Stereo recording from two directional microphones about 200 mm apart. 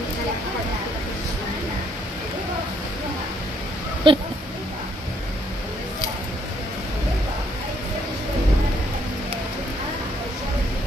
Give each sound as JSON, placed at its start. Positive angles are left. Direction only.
{"t": 4.1, "sound": "speech", "side_deg": -25}